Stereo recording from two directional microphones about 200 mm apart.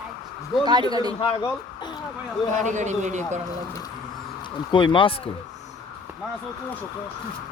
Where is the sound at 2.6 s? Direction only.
35° right (ahead or behind).